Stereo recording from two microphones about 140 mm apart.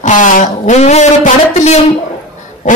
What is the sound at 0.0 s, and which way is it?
A man's voice, 65° left (ahead or behind).